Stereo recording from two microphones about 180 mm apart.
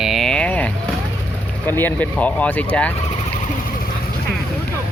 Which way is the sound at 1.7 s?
10° left (ahead or behind).